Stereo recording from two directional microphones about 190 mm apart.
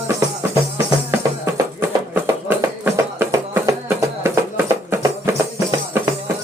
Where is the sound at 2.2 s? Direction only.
10° right (ahead or behind).